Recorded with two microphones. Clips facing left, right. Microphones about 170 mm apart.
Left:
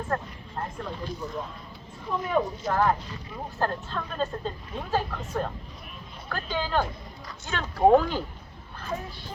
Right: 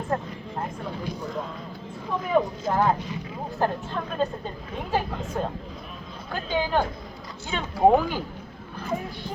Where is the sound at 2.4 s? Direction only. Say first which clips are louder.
Right 1 dB; 15° right (ahead or behind).